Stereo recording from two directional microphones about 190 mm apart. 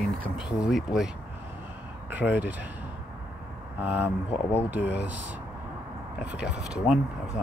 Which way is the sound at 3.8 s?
10° right (ahead or behind).